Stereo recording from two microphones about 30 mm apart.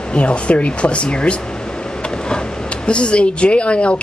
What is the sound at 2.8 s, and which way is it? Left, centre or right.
Speech, left.